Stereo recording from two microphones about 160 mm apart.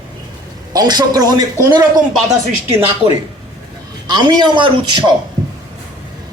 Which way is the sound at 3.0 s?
40° right (ahead or behind).